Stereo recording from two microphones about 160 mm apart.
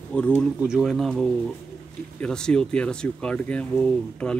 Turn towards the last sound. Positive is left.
turn(degrees=5)  # may be behind; listen again after turning